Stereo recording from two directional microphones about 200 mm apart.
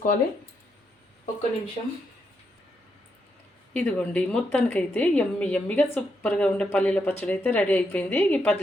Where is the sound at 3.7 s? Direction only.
5° left (ahead or behind).